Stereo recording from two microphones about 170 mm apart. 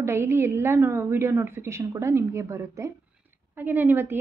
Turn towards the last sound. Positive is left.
turn(degrees=-10)  # may be behind; listen again after turning